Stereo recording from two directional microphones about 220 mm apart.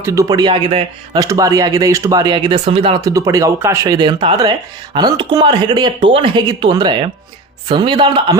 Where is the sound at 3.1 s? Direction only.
15° right (ahead or behind).